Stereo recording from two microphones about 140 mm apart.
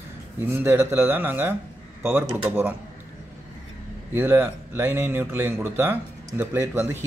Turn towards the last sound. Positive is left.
turn(degrees=-20)  # may be behind; listen again after turning